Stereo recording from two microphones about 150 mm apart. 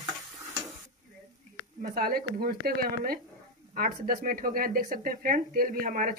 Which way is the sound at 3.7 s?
75° right (ahead or behind).